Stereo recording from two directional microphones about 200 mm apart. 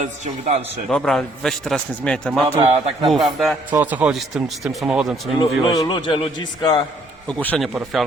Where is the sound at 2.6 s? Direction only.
30° right (ahead or behind).